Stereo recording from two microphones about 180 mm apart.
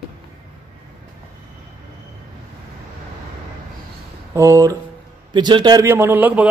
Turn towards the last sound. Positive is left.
turn(degrees=-10)  # may be behind; listen again after turning